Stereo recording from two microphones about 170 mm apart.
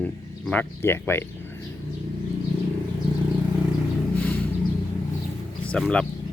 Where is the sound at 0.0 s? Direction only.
10° left (ahead or behind).